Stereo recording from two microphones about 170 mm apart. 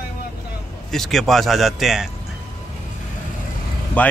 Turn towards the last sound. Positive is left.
turn(degrees=10)  # may be behind; listen again after turning